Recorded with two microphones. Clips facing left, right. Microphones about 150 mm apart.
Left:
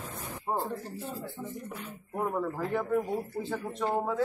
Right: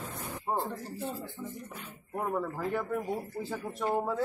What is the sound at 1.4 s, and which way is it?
Speech, 55° left (ahead or behind).